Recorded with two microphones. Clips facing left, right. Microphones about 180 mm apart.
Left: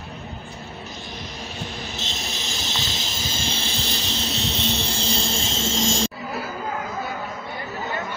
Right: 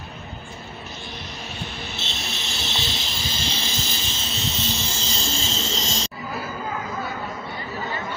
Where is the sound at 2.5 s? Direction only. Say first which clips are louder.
Right 2 dB; 40° left (ahead or behind).